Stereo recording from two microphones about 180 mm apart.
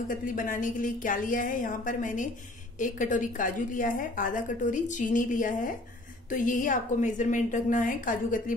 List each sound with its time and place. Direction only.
0.1 s a woman's voice: 50° left (ahead or behind)